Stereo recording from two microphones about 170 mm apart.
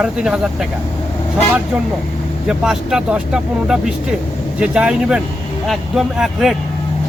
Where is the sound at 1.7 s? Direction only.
5° right (ahead or behind).